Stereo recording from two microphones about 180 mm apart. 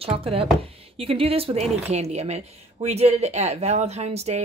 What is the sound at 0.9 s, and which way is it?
Speech, 30° right (ahead or behind).